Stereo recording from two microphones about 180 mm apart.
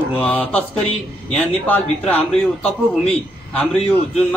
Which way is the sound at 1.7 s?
10° left (ahead or behind).